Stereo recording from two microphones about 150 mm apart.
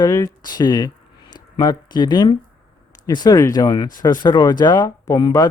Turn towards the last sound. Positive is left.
turn(degrees=25)  # may be behind; listen again after turning